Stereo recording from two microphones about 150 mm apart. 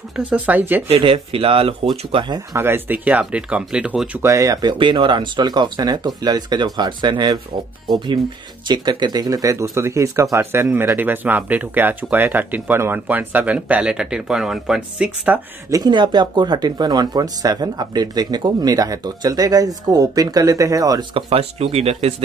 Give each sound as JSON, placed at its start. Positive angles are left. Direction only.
{"t": 0.1, "sound": "speech", "side_deg": -10}
{"t": 0.8, "sound": "speech", "side_deg": -40}
{"t": 2.5, "sound": "speech", "side_deg": -15}
{"t": 4.2, "sound": "speech", "side_deg": -20}
{"t": 8.6, "sound": "speech", "side_deg": -30}
{"t": 15.7, "sound": "speech", "side_deg": -30}
{"t": 21.3, "sound": "speech", "side_deg": -45}